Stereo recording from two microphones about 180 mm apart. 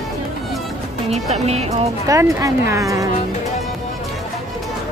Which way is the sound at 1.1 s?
35° right (ahead or behind).